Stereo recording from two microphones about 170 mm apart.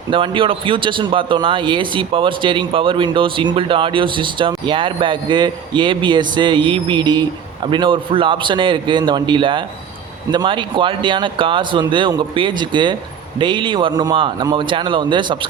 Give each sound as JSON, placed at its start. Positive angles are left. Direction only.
{"t": 0.1, "sound": "speech", "side_deg": -30}